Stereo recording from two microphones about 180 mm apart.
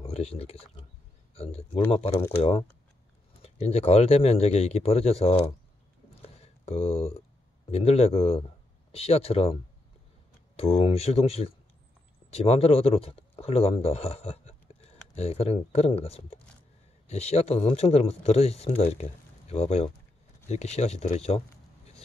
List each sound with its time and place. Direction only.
0.0 s speech: 35° left (ahead or behind)
3.4 s speech: 35° left (ahead or behind)
6.2 s a sound: 35° left (ahead or behind)
7.7 s speech: 35° left (ahead or behind)